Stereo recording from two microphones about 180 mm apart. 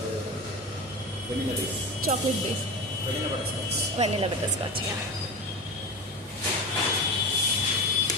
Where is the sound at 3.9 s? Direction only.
30° right (ahead or behind).